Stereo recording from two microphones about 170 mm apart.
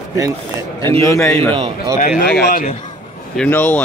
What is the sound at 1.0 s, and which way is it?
Speech, 20° left (ahead or behind).